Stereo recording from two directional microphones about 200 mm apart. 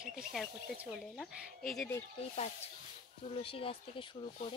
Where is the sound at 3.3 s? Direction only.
30° left (ahead or behind).